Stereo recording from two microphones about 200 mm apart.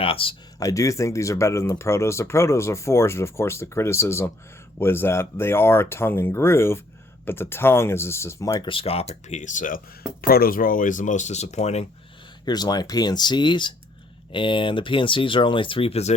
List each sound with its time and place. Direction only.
0.0 s speech: 25° left (ahead or behind)
12.5 s speech: 20° left (ahead or behind)